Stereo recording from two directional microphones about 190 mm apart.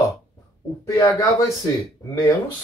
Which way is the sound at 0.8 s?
20° left (ahead or behind).